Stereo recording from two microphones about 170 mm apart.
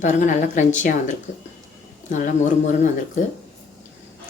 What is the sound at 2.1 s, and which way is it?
Speech, 50° left (ahead or behind).